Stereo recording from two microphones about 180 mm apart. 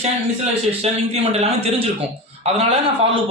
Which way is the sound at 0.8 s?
35° right (ahead or behind).